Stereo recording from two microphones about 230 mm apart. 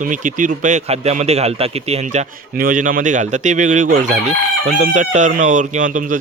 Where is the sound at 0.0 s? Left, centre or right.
Right.